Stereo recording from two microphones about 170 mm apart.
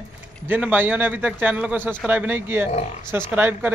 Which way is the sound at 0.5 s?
10° right (ahead or behind).